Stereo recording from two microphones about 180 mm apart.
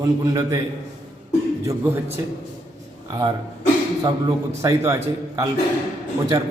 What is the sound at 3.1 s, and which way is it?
Speech, 20° right (ahead or behind).